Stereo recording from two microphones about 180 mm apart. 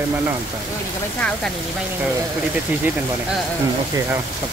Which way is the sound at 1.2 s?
5° left (ahead or behind).